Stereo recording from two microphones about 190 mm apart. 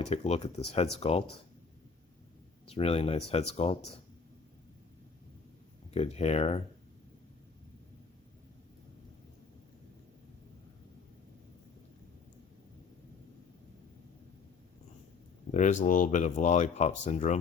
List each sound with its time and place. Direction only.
0.0 s speech: 35° left (ahead or behind)
2.6 s speech: 30° left (ahead or behind)
5.9 s speech: 30° left (ahead or behind)
15.5 s speech: 40° left (ahead or behind)